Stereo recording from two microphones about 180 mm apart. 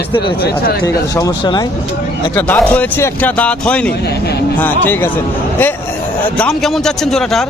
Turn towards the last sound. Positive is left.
turn(degrees=0)  # may be behind; listen again after turning